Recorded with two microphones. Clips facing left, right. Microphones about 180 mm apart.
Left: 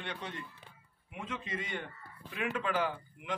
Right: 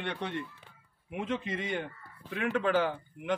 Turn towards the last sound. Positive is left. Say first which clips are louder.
# right 3 dB
turn(degrees=-55)  # may be behind; listen again after turning